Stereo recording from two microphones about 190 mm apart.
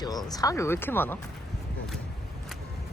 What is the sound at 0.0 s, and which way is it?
Speech, 20° left (ahead or behind).